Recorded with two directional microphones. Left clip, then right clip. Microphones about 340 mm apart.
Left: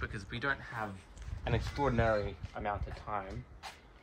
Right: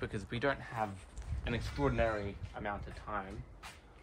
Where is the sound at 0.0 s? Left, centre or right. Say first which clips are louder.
Right 1 dB; centre.